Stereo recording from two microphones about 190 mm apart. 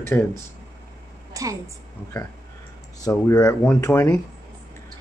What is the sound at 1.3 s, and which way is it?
Speech, 15° right (ahead or behind).